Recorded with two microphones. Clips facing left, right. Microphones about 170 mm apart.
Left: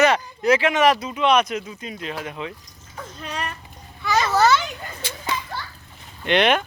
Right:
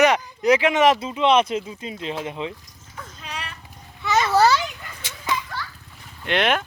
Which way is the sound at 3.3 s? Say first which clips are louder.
Left 5 dB; 45° left (ahead or behind).